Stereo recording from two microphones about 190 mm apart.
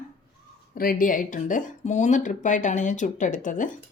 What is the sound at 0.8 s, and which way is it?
Speech, 50° left (ahead or behind).